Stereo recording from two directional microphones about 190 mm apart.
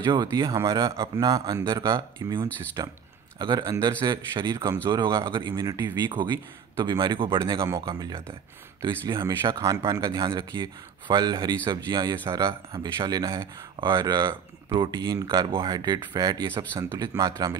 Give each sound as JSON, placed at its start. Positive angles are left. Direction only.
{"t": 0.0, "sound": "speech", "side_deg": -20}